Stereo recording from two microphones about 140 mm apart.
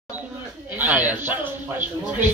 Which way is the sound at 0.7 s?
10° right (ahead or behind).